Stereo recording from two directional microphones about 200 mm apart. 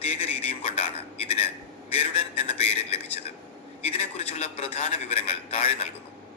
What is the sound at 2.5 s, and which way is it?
A man's voice, 30° left (ahead or behind).